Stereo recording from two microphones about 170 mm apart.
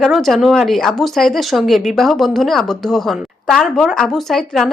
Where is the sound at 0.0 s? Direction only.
Centre (ahead or behind).